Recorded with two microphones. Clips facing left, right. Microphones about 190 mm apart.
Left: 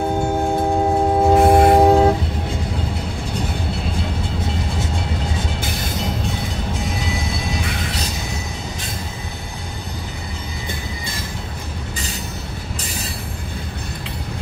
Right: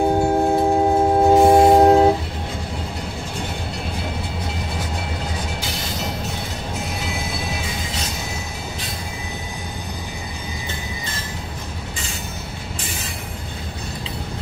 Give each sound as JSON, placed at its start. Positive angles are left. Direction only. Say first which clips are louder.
{"t": 0.2, "sound": "train", "louder": "right 2 dB", "side_deg": -5}
{"t": 5.6, "sound": "music", "louder": "left 2 dB", "side_deg": 55}
{"t": 7.6, "sound": "music", "louder": "left 3 dB", "side_deg": 65}